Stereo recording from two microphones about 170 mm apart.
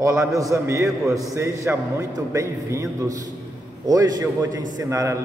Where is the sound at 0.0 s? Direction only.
20° right (ahead or behind).